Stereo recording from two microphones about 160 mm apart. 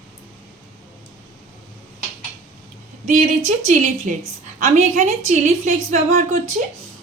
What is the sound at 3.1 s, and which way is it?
A woman's voice, 50° right (ahead or behind).